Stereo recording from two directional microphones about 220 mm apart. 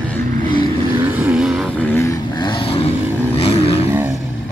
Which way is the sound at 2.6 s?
25° left (ahead or behind).